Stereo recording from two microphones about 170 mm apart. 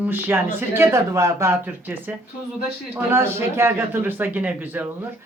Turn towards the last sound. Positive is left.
turn(degrees=-10)  # may be behind; listen again after turning